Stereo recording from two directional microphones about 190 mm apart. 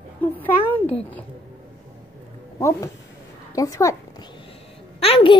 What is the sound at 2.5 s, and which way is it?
Speech, 15° left (ahead or behind).